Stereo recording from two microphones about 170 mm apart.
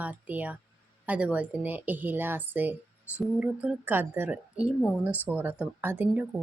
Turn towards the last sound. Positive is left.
turn(degrees=-10)  # may be behind; listen again after turning